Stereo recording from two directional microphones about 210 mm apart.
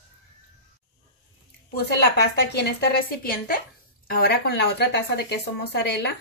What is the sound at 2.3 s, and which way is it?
Speech, 50° left (ahead or behind).